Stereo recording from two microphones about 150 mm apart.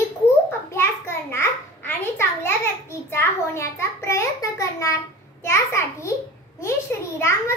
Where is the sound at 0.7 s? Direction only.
15° left (ahead or behind).